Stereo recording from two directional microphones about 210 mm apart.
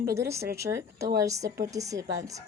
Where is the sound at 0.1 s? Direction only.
15° right (ahead or behind).